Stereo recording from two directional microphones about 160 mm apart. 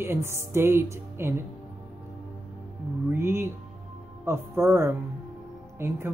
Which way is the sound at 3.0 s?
15° right (ahead or behind).